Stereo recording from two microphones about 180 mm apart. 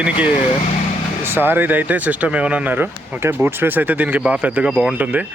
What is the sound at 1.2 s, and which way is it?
Speech, 10° right (ahead or behind).